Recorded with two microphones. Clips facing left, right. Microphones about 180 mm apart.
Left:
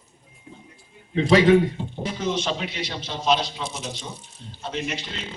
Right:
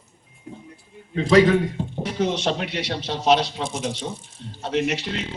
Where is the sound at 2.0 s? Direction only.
65° right (ahead or behind); by 4.1 s 50° right (ahead or behind).